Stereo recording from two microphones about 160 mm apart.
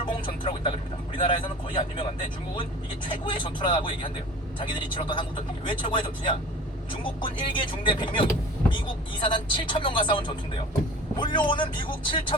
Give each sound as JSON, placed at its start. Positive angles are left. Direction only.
{"t": 0.0, "sound": "vehicle", "side_deg": 30}
{"t": 1.2, "sound": "speech", "side_deg": 30}
{"t": 3.1, "sound": "speech", "side_deg": 30}